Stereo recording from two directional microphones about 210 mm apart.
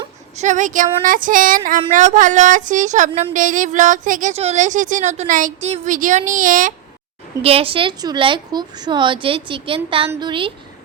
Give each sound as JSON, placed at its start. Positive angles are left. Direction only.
{"t": 0.3, "sound": "a woman's voice", "side_deg": -35}
{"t": 7.4, "sound": "a woman's voice", "side_deg": -25}